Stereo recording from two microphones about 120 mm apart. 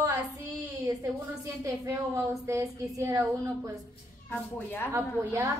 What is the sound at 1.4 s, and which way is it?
A woman's voice, 30° right (ahead or behind).